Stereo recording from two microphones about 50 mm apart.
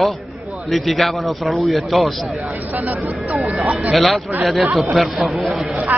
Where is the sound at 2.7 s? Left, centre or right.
Right.